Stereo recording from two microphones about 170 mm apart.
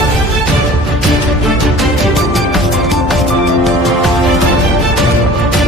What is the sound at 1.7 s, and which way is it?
Music, centre (ahead or behind).